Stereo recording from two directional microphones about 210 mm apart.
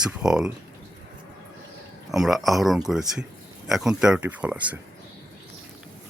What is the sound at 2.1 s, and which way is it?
Speech, centre (ahead or behind).